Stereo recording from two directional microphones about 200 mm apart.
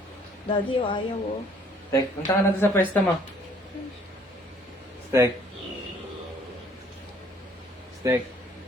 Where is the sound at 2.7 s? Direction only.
10° left (ahead or behind).